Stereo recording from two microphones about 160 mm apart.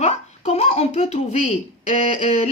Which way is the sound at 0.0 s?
40° left (ahead or behind).